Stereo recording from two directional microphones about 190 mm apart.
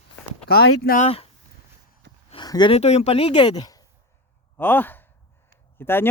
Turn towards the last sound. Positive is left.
turn(degrees=10)  # may be behind; listen again after turning